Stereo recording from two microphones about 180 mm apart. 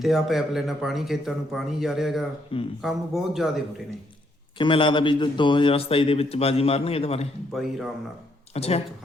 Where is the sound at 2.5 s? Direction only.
30° left (ahead or behind).